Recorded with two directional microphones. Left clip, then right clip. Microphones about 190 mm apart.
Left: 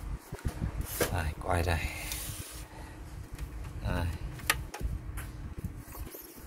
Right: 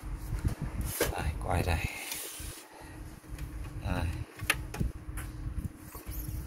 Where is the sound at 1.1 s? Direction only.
25° left (ahead or behind).